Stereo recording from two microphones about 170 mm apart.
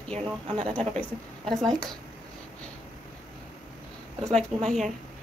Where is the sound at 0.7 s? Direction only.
5° left (ahead or behind).